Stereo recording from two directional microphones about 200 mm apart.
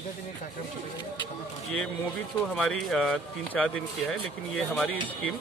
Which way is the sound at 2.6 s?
Centre (ahead or behind).